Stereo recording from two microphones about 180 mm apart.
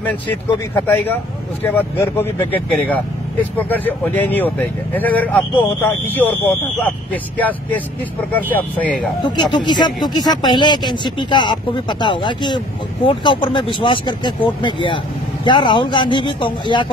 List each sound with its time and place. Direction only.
0.8 s speech: 10° left (ahead or behind)
9.2 s speech: 25° left (ahead or behind)